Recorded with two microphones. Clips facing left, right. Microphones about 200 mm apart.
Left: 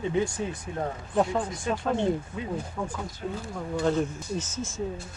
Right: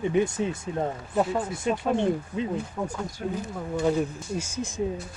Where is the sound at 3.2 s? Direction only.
50° right (ahead or behind).